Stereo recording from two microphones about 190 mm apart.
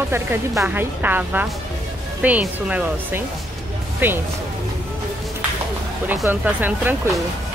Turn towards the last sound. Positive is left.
turn(degrees=-10)  # may be behind; listen again after turning